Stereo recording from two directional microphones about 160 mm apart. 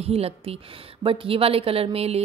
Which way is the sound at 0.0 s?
40° right (ahead or behind).